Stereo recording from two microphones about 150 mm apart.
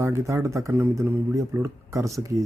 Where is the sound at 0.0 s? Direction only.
20° right (ahead or behind).